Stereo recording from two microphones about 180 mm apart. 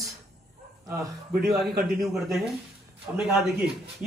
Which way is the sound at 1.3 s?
60° right (ahead or behind).